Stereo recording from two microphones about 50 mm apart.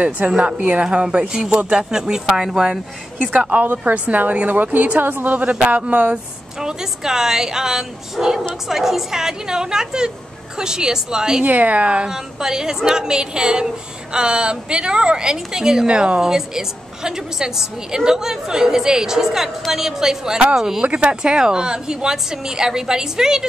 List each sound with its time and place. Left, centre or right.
0.2 s a woman's voice: right
1.3 s a woman's voice: centre
3.2 s a woman's voice: right
6.6 s a woman's voice: centre
11.4 s a woman's voice: right
12.1 s a woman's voice: centre
20.8 s a woman's voice: right